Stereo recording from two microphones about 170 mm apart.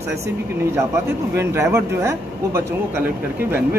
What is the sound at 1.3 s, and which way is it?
Speech, 15° right (ahead or behind).